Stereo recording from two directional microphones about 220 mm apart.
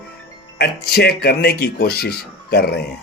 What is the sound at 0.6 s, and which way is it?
Speech, 45° left (ahead or behind).